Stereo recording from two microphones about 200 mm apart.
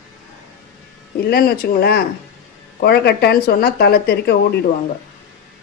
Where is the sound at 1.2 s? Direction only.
50° left (ahead or behind).